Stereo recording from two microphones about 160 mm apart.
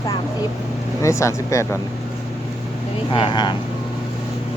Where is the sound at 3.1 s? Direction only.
30° left (ahead or behind).